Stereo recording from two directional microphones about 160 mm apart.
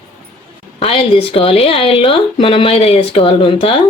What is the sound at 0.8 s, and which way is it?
A woman's voice, 35° left (ahead or behind).